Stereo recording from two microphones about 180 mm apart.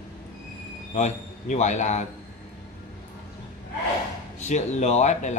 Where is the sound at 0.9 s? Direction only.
40° left (ahead or behind).